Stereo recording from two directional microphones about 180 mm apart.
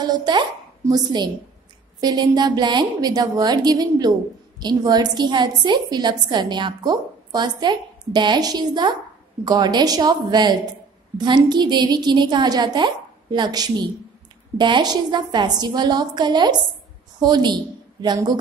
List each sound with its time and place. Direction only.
0.0 s a woman's voice: 25° right (ahead or behind)